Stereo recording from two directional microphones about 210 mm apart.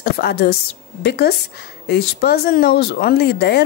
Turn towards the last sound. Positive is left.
turn(degrees=50)  # may be behind; listen again after turning